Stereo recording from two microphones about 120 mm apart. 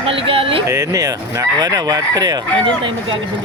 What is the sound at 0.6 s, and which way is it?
Chicken, 25° right (ahead or behind).